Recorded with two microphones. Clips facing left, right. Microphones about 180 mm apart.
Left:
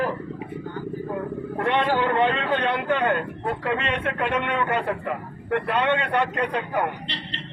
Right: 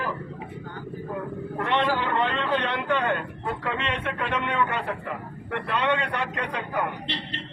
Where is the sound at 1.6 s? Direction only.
45° left (ahead or behind).